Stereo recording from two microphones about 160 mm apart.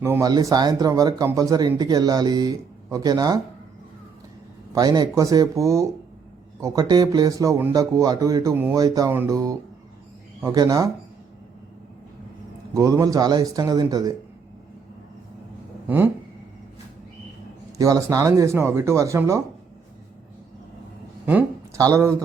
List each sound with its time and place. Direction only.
0.0 s speech: 20° right (ahead or behind)
4.7 s speech: 25° right (ahead or behind)
12.7 s speech: 20° right (ahead or behind)
15.9 s a sound: 10° right (ahead or behind)
17.7 s speech: 20° right (ahead or behind)
21.8 s speech: 20° right (ahead or behind)